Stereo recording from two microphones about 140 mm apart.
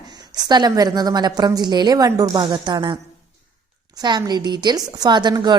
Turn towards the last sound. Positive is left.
turn(degrees=-30)  # may be behind; listen again after turning